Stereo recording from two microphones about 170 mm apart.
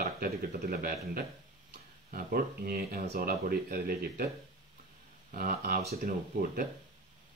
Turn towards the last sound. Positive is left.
turn(degrees=-60)  # may be behind; listen again after turning